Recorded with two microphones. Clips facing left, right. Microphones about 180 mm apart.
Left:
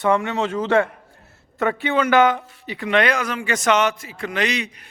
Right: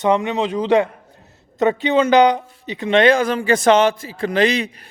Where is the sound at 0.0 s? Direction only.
20° right (ahead or behind).